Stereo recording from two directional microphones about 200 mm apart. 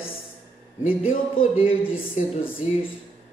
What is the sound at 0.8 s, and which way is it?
Speech, 25° left (ahead or behind).